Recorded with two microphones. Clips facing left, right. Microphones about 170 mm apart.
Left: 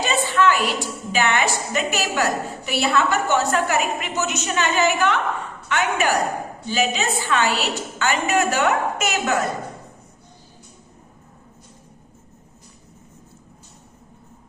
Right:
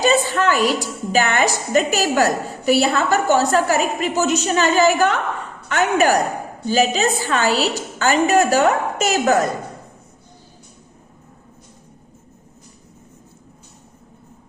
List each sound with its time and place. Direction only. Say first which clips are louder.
0.0 s a woman's voice: right 3 dB; 40° right (ahead or behind)